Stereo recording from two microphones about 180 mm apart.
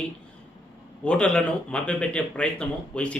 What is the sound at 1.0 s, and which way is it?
Speech, 5° left (ahead or behind).